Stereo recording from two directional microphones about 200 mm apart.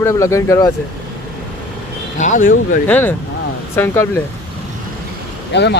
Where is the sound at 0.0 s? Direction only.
15° left (ahead or behind).